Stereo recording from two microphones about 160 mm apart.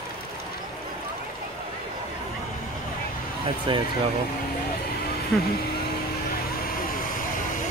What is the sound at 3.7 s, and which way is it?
Speech, 30° right (ahead or behind).